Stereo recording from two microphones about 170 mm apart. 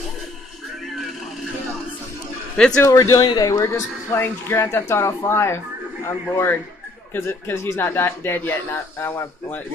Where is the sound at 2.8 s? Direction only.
20° left (ahead or behind).